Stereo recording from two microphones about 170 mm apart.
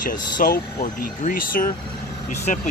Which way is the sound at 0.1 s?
55° left (ahead or behind).